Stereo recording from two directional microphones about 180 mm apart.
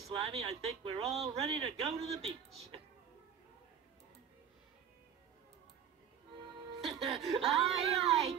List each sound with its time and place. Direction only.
0.1 s speech: 30° right (ahead or behind)
6.8 s music: centre (ahead or behind)
7.4 s speech: centre (ahead or behind)